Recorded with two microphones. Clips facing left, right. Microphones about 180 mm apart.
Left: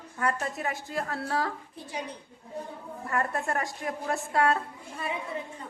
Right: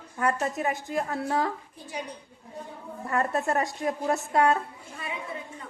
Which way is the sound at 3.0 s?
25° right (ahead or behind).